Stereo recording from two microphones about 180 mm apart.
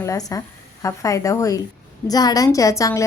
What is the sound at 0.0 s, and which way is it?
A woman's voice, 20° left (ahead or behind).